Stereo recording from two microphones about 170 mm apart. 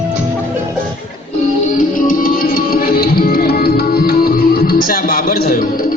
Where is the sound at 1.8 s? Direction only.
55° left (ahead or behind).